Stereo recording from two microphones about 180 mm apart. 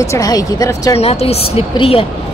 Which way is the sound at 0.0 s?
20° left (ahead or behind).